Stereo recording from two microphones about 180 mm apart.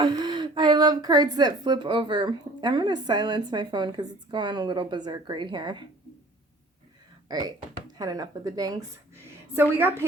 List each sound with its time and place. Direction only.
0.0 s a woman's voice: 25° right (ahead or behind)
7.3 s a woman's voice: 20° right (ahead or behind)